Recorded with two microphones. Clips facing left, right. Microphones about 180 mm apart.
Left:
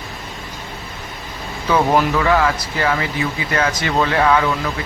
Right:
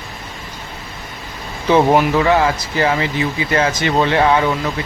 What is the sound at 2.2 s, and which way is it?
Speech, 30° right (ahead or behind).